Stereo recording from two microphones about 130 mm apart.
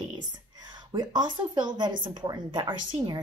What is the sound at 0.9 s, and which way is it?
Speech, 30° right (ahead or behind).